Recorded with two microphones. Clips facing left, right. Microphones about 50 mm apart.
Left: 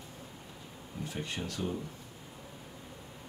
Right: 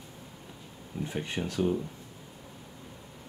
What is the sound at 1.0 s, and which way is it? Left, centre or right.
Speech, right.